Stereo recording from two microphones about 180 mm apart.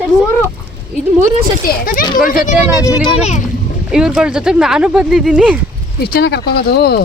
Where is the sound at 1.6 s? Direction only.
55° left (ahead or behind).